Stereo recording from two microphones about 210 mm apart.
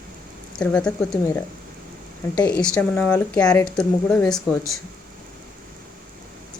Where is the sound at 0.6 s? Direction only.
5° left (ahead or behind).